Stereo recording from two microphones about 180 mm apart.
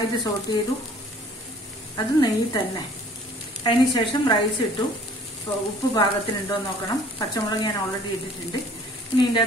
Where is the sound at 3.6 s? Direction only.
25° left (ahead or behind).